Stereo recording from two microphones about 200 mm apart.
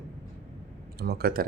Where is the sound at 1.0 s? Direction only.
50° right (ahead or behind).